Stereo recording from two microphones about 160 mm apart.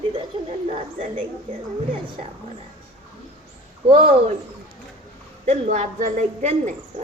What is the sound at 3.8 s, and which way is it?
Speech, 35° right (ahead or behind).